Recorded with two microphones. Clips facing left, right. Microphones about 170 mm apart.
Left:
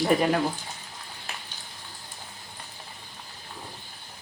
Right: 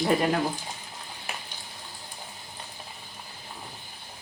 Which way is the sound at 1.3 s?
15° right (ahead or behind).